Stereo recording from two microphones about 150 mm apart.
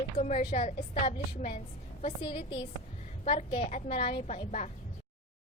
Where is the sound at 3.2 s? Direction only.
50° left (ahead or behind).